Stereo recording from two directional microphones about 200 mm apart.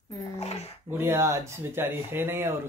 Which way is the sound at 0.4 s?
35° left (ahead or behind).